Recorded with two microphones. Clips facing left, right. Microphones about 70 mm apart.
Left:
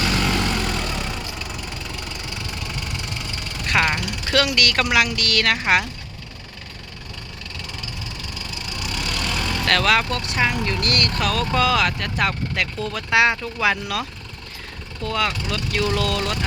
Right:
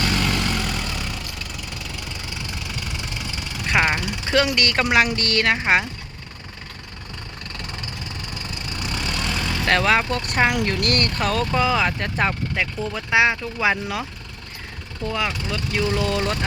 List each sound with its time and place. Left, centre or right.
0.1 s vehicle: centre
3.2 s speech: centre
8.6 s vehicle: right
9.6 s speech: right
10.2 s speech: right
15.0 s speech: centre